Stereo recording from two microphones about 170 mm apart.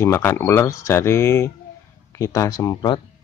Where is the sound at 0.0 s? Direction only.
15° left (ahead or behind).